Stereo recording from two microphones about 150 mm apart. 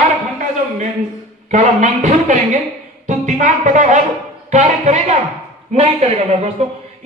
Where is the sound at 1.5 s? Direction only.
55° right (ahead or behind).